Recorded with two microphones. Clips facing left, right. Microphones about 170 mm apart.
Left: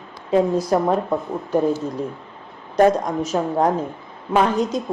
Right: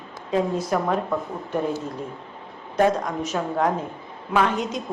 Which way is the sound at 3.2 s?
35° left (ahead or behind).